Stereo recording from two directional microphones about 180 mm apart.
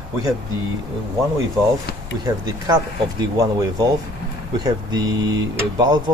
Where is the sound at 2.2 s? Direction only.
20° right (ahead or behind).